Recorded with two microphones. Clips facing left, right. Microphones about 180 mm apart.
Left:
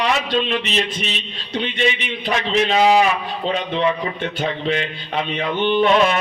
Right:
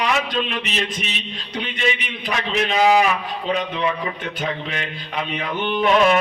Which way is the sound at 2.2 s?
30° left (ahead or behind).